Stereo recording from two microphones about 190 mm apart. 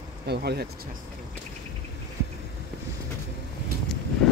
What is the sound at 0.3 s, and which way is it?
Speech, 60° right (ahead or behind).